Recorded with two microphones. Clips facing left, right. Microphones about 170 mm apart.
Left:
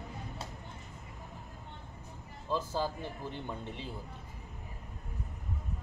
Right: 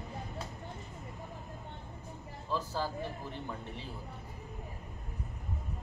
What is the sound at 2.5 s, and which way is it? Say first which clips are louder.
Speech: left 2 dB; 20° left (ahead or behind).